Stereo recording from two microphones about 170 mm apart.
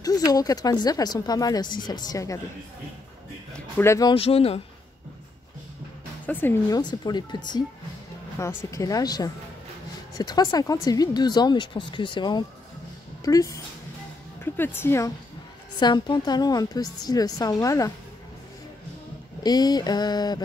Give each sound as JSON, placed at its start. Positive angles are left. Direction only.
{"t": 0.3, "sound": "speech", "side_deg": 20}
{"t": 3.5, "sound": "speech", "side_deg": 10}
{"t": 4.1, "sound": "speech", "side_deg": 35}
{"t": 6.2, "sound": "speech", "side_deg": 10}
{"t": 6.8, "sound": "speech", "side_deg": 25}
{"t": 19.4, "sound": "speech", "side_deg": 25}